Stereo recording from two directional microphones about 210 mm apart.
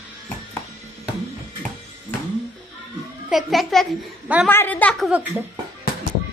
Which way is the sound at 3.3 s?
Centre (ahead or behind).